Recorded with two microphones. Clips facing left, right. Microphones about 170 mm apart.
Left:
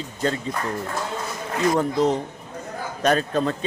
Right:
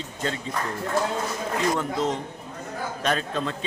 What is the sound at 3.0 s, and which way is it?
Speech, 40° left (ahead or behind).